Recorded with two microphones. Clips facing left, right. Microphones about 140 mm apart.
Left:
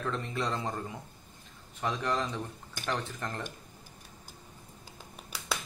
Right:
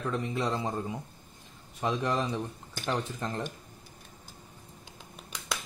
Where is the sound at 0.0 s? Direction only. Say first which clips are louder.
Right 2 dB; 15° right (ahead or behind).